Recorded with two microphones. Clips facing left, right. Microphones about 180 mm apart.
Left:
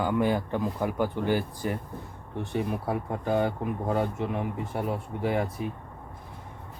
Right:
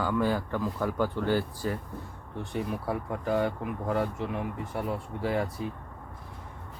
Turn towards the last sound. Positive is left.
turn(degrees=20)  # may be behind; listen again after turning